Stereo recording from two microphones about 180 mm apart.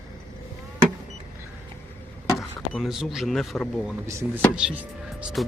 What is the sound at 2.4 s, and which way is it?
Speech, centre (ahead or behind).